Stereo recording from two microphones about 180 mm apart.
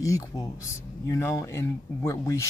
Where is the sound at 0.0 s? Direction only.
15° left (ahead or behind).